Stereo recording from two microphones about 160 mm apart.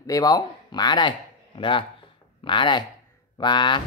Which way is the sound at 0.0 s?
20° left (ahead or behind).